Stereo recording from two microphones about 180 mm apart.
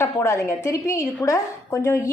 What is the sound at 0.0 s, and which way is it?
A woman's voice, 15° left (ahead or behind).